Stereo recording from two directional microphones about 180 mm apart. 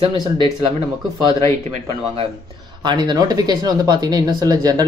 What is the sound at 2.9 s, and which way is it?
Speech, 25° right (ahead or behind).